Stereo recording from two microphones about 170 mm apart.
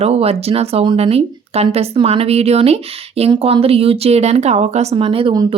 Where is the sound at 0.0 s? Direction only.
35° right (ahead or behind).